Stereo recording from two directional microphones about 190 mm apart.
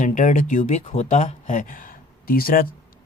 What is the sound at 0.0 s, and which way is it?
Speech, 40° left (ahead or behind).